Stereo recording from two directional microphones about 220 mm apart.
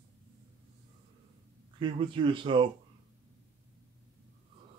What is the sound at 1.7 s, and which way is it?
Speech, 20° right (ahead or behind).